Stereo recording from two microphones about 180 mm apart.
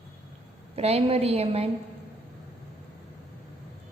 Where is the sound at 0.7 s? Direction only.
35° right (ahead or behind).